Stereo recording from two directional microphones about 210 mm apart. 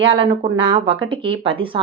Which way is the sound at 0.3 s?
25° right (ahead or behind).